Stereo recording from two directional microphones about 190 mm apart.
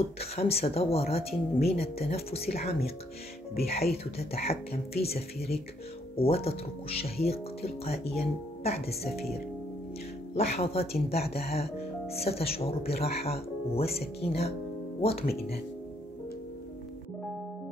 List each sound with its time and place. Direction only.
0.2 s speech: 30° left (ahead or behind)
10.3 s speech: 30° left (ahead or behind)